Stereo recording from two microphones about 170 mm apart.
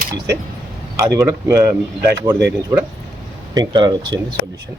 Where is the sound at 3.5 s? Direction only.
25° right (ahead or behind).